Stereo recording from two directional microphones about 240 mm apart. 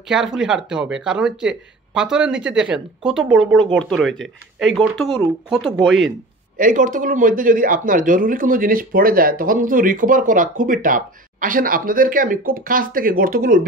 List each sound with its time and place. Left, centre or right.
0.1 s speech: centre
5.5 s speech: centre
6.5 s a man's voice: right